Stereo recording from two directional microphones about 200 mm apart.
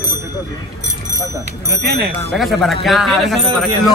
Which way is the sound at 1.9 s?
50° right (ahead or behind).